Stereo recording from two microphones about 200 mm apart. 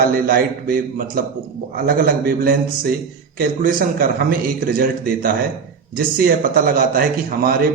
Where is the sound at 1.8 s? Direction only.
45° right (ahead or behind).